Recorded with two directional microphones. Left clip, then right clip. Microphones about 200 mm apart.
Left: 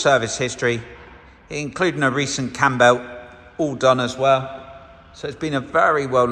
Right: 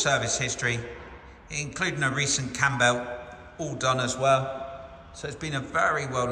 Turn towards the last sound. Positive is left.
turn(degrees=-5)  # may be behind; listen again after turning